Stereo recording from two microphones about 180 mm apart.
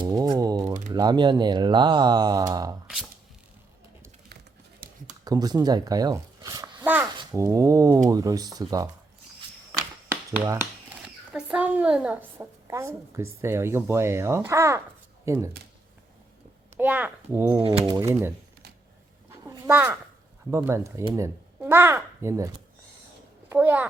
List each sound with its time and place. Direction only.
0.0 s a sound: 25° right (ahead or behind)
0.9 s speech: 25° right (ahead or behind)
4.8 s a sound: 55° right (ahead or behind)
5.2 s a child's voice: 20° right (ahead or behind)
9.7 s finger snapping: 15° right (ahead or behind)
11.3 s a woman's voice: 5° right (ahead or behind)
16.7 s speech: 10° right (ahead or behind)
17.6 s speech: 30° right (ahead or behind)
19.3 s a sound: 15° right (ahead or behind)
20.5 s a child's voice: 15° right (ahead or behind)